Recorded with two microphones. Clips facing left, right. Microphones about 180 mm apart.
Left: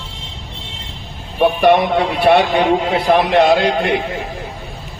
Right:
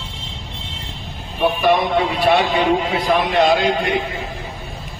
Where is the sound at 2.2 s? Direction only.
60° left (ahead or behind).